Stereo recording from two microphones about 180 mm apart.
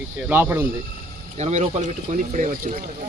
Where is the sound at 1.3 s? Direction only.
40° right (ahead or behind).